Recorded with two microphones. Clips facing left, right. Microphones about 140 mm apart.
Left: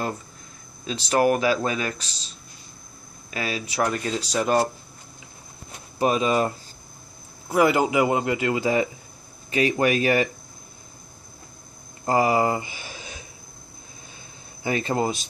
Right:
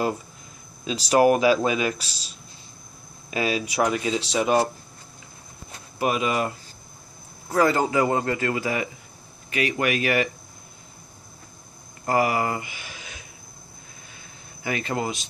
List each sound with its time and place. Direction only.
1.0 s speech: 15° right (ahead or behind)
5.9 s speech: 30° left (ahead or behind)
7.5 s speech: 15° left (ahead or behind); by 10.3 s 30° left (ahead or behind)
12.1 s speech: 25° left (ahead or behind)
14.6 s speech: 30° left (ahead or behind)